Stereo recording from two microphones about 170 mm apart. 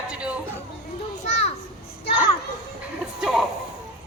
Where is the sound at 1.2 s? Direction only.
40° left (ahead or behind).